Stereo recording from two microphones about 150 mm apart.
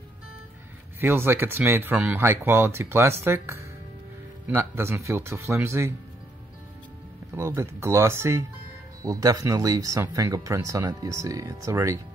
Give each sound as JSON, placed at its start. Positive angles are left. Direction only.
{"t": 1.0, "sound": "speech", "side_deg": -15}
{"t": 7.3, "sound": "speech", "side_deg": -20}